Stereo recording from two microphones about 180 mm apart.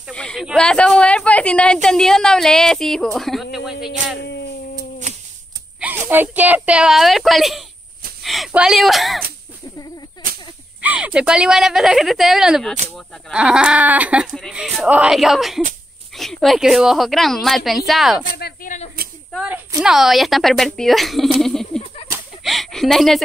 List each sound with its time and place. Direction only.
0.1 s a woman's voice: 5° left (ahead or behind)
4.2 s speech: 70° left (ahead or behind)
5.8 s speech: 10° right (ahead or behind)
10.8 s speech: 5° right (ahead or behind)
18.3 s speech: 55° left (ahead or behind)
19.3 s speech: 5° right (ahead or behind)
22.1 s a sound: centre (ahead or behind)